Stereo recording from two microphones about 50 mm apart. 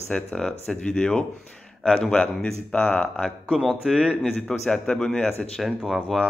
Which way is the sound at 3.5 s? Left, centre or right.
Centre.